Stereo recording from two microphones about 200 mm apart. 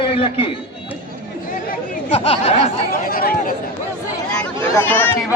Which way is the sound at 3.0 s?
45° left (ahead or behind).